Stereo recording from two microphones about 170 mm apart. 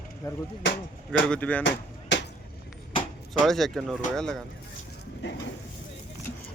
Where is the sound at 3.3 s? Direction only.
Centre (ahead or behind).